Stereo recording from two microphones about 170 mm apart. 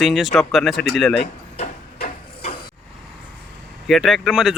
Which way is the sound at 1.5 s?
40° left (ahead or behind).